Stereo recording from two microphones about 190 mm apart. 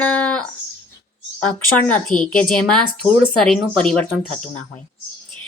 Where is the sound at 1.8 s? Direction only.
10° left (ahead or behind).